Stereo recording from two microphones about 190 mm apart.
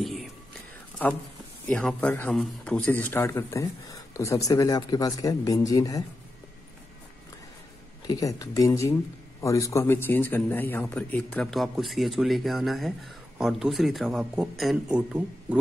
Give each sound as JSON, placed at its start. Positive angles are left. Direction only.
{"t": 0.0, "sound": "whispering", "side_deg": 0}
{"t": 1.7, "sound": "a man's voice", "side_deg": 5}
{"t": 8.1, "sound": "a man's voice", "side_deg": 20}